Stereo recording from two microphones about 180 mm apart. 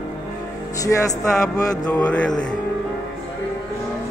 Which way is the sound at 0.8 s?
20° left (ahead or behind).